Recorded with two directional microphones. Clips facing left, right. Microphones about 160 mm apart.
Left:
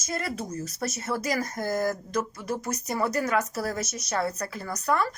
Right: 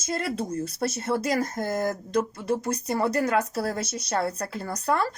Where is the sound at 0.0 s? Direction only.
25° right (ahead or behind).